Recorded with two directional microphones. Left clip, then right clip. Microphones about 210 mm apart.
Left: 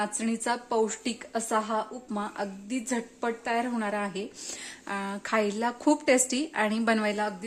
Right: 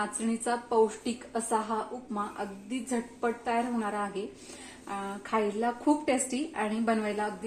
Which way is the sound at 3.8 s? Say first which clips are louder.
Left 2 dB; 60° left (ahead or behind).